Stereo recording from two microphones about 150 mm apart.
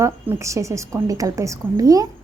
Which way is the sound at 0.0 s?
20° right (ahead or behind).